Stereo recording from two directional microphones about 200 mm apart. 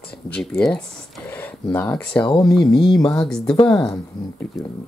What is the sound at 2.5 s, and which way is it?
Speech, centre (ahead or behind).